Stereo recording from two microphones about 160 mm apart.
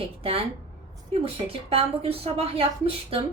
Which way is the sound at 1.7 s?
40° right (ahead or behind).